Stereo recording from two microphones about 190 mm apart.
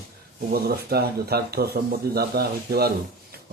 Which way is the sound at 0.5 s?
55° right (ahead or behind).